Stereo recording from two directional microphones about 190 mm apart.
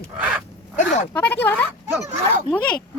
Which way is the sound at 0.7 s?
40° left (ahead or behind).